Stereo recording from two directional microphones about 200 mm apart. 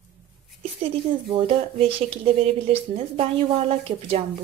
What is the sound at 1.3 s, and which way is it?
Speech, 30° right (ahead or behind).